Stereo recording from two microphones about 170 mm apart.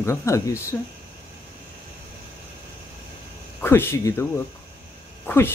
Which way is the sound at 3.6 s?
15° left (ahead or behind).